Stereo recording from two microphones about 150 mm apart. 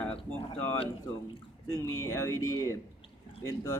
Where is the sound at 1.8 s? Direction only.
20° left (ahead or behind).